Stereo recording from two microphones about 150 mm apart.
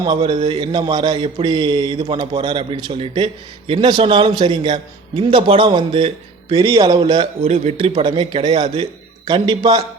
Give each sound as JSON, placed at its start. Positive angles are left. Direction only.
{"t": 0.2, "sound": "a man's voice", "side_deg": -35}